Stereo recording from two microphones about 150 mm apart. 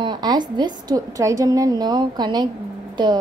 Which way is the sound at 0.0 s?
30° right (ahead or behind).